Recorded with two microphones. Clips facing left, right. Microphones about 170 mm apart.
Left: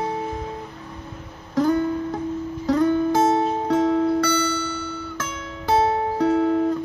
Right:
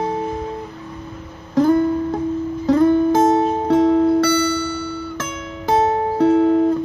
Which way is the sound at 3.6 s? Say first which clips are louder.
Right 6 dB; 35° right (ahead or behind).